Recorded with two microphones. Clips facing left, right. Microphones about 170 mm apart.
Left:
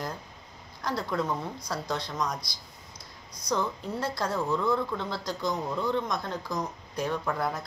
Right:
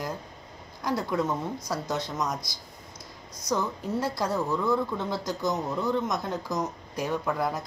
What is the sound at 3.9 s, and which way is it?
Speech, 10° right (ahead or behind).